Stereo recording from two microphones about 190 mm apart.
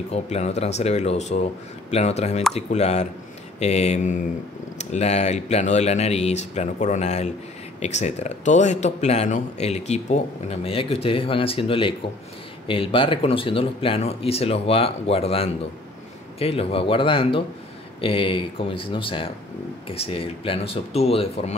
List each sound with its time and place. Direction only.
0.1 s speech: 35° left (ahead or behind)